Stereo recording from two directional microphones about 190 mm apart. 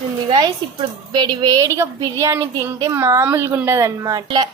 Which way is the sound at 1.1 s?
25° right (ahead or behind).